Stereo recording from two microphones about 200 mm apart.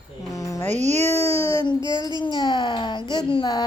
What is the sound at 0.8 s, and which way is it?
Speech, 35° right (ahead or behind).